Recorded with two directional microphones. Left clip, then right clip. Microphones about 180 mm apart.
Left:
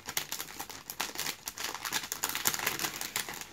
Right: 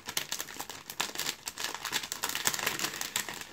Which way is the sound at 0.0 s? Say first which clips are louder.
Right 1 dB; 20° right (ahead or behind).